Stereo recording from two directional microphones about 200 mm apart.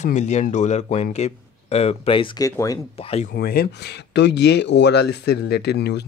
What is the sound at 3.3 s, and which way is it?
Speech, 50° left (ahead or behind).